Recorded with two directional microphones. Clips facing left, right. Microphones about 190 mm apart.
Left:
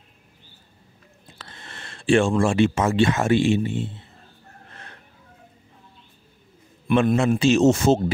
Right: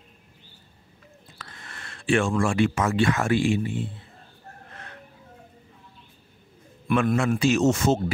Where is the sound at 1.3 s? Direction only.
25° left (ahead or behind).